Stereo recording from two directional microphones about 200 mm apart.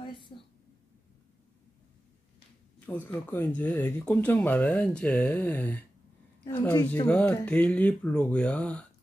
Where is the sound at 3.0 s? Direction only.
10° left (ahead or behind).